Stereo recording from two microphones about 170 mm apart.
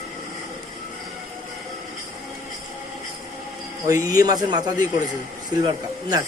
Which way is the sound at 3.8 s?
20° right (ahead or behind).